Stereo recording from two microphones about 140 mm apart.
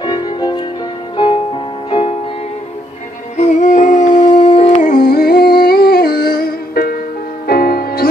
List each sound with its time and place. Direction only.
0.0 s violin: 30° left (ahead or behind)
1.1 s music: 35° left (ahead or behind)
3.3 s music: 60° left (ahead or behind)
4.8 s humming: 90° left
7.4 s music: 90° left